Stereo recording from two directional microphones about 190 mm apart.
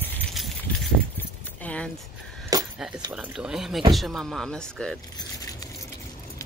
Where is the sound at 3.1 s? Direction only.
5° right (ahead or behind).